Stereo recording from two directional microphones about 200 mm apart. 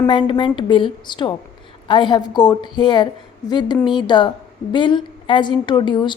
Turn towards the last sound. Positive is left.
turn(degrees=25)  # may be behind; listen again after turning